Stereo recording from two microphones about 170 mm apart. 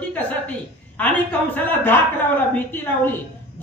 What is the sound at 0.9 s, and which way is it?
Speech, 10° left (ahead or behind).